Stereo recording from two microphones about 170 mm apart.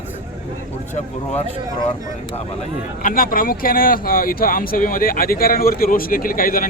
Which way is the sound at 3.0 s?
55° left (ahead or behind).